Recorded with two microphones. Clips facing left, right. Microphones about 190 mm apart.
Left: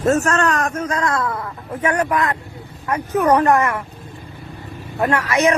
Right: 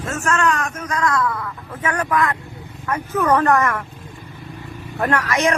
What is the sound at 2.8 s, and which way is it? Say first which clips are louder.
Speech: left 2 dB; 35° left (ahead or behind).